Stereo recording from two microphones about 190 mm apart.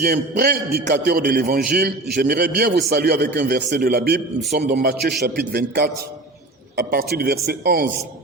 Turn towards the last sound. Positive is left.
turn(degrees=-60)  # may be behind; listen again after turning